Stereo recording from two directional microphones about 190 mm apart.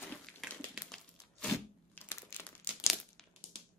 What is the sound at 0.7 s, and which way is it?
Crumpling, 5° left (ahead or behind).